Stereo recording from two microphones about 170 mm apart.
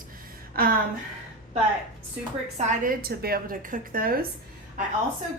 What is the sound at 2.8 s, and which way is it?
A woman's voice, 60° right (ahead or behind).